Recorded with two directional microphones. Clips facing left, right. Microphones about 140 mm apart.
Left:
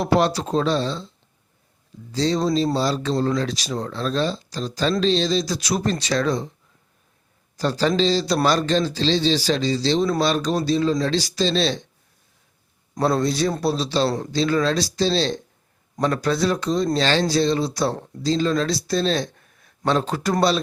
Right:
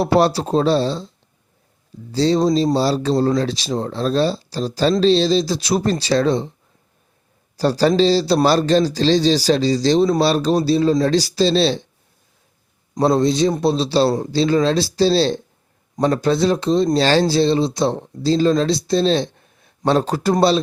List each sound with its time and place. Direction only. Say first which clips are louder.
0.0 s speech: right 4 dB; 35° right (ahead or behind)
2.1 s speech: right 5 dB; 30° right (ahead or behind)
7.5 s speech: right 5 dB; 35° right (ahead or behind)
13.0 s a man's voice: right 5 dB; 25° right (ahead or behind)